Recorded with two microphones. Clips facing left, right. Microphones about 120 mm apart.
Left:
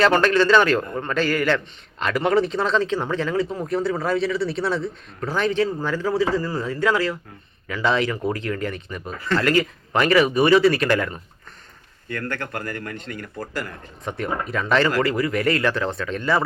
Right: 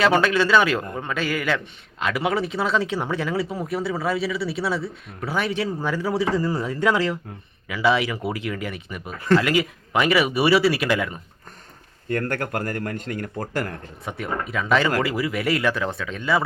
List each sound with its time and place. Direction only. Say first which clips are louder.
0.0 s a man's voice: left 2 dB; 5° right (ahead or behind)
12.0 s speech: right 4 dB; 45° right (ahead or behind)
14.0 s speech: left 2 dB; 5° right (ahead or behind)